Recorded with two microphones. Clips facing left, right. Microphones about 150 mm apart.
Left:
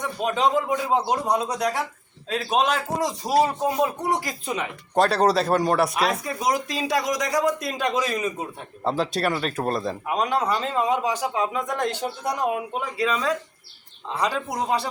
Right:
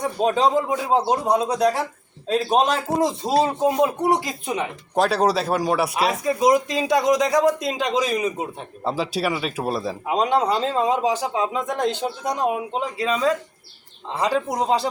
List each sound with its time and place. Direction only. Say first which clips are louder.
0.0 s a man's voice: right 4 dB; 30° right (ahead or behind)
4.9 s speech: even; centre (ahead or behind)
6.2 s a man's voice: right 7 dB; 25° right (ahead or behind)
8.8 s speech: even; 5° right (ahead or behind)
10.1 s a man's voice: right 4 dB; 25° right (ahead or behind)